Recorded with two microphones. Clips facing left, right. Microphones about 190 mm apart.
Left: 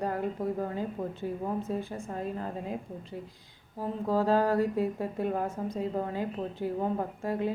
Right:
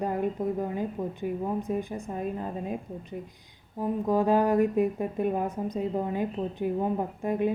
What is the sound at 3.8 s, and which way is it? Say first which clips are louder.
Speech: right 3 dB; 15° right (ahead or behind).